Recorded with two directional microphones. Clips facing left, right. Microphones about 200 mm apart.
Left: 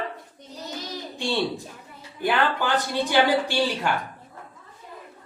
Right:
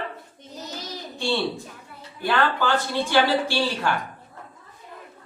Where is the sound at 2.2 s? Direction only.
15° left (ahead or behind).